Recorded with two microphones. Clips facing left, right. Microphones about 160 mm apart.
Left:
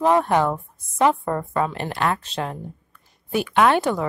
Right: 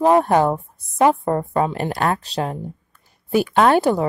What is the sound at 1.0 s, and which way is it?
Speech, 20° right (ahead or behind).